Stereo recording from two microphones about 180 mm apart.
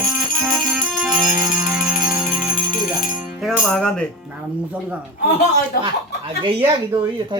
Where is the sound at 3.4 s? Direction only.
Centre (ahead or behind).